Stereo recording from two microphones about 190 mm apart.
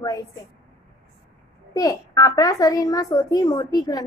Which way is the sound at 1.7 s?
20° left (ahead or behind).